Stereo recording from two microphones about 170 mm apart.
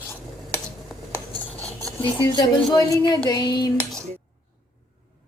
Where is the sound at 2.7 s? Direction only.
25° left (ahead or behind).